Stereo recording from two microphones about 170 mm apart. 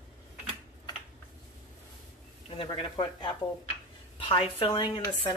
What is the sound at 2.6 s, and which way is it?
A woman's voice, 25° left (ahead or behind).